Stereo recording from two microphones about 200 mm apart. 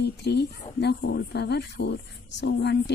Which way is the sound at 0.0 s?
55° left (ahead or behind).